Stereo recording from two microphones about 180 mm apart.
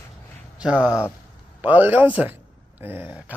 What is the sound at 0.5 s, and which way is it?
Speech, 5° right (ahead or behind).